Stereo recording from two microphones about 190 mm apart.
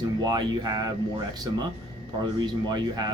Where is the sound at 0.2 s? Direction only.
20° right (ahead or behind).